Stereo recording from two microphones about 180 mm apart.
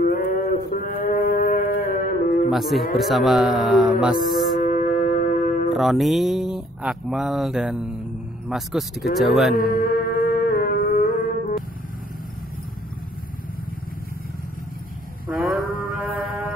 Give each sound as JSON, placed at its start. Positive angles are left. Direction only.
{"t": 0.0, "sound": "cattle", "side_deg": 55}
{"t": 0.7, "sound": "foghorn", "side_deg": 50}
{"t": 2.5, "sound": "speech", "side_deg": 0}
{"t": 4.6, "sound": "music", "side_deg": 45}
{"t": 5.8, "sound": "speech", "side_deg": 0}
{"t": 9.6, "sound": "music", "side_deg": 55}
{"t": 15.3, "sound": "livestock", "side_deg": -10}
{"t": 15.7, "sound": "music", "side_deg": 55}